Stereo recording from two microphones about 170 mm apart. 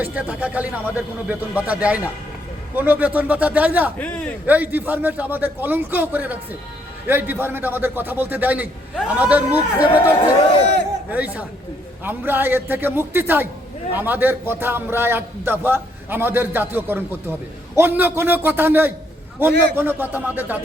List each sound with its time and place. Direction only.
0.0 s a man's voice: 10° right (ahead or behind)
3.9 s a man's voice: 10° left (ahead or behind)
4.4 s a man's voice: 10° right (ahead or behind)
11.1 s a man's voice: 10° right (ahead or behind)